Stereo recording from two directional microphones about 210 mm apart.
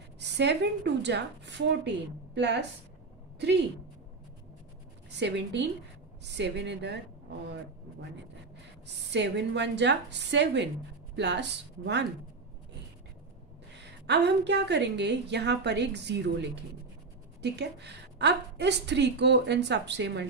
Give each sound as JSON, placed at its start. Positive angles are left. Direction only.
{"t": 0.2, "sound": "a woman's voice", "side_deg": -55}
{"t": 5.1, "sound": "a woman's voice", "side_deg": -55}
{"t": 8.8, "sound": "a woman's voice", "side_deg": -55}
{"t": 13.7, "sound": "a woman's voice", "side_deg": -55}